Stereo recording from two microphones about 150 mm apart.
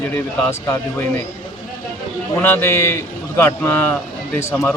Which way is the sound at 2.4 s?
15° left (ahead or behind).